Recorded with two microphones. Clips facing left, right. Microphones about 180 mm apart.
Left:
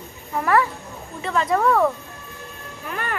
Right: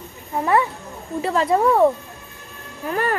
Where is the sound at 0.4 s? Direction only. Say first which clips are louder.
Right 1 dB; 25° right (ahead or behind).